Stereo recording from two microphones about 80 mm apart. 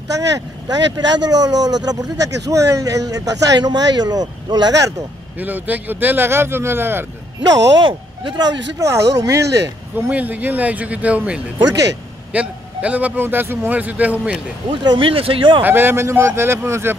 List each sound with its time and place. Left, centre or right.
0.1 s speech: right
3.5 s speech: right
5.4 s a man's voice: right
7.4 s speech: right
7.8 s speech: right
8.8 s speech: right
9.9 s a man's voice: right
14.7 s speech: right
15.6 s speech: right